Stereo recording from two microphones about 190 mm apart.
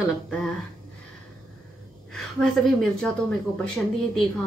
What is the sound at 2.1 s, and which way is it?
Speech, centre (ahead or behind).